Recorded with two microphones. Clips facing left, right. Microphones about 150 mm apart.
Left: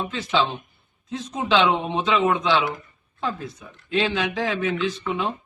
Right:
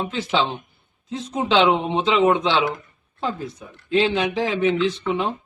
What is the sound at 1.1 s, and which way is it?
Speech, 30° right (ahead or behind).